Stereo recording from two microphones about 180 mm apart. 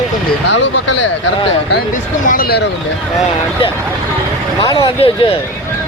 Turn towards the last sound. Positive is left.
turn(degrees=25)  # may be behind; listen again after turning